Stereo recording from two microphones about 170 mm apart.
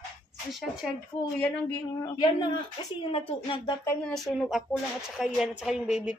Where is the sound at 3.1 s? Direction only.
30° left (ahead or behind).